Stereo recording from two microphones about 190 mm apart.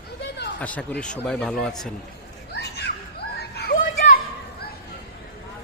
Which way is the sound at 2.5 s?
60° left (ahead or behind).